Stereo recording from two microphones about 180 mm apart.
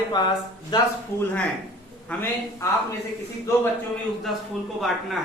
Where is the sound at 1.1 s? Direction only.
15° left (ahead or behind).